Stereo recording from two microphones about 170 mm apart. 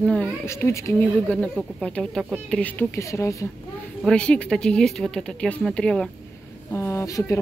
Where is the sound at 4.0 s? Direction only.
5° left (ahead or behind).